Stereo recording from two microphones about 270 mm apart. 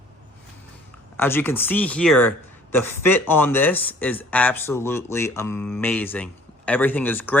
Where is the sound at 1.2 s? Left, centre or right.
Centre.